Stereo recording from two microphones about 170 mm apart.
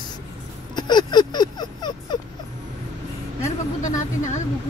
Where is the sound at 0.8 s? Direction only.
25° left (ahead or behind).